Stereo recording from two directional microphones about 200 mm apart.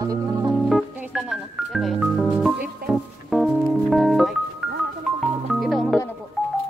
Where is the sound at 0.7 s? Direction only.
Centre (ahead or behind).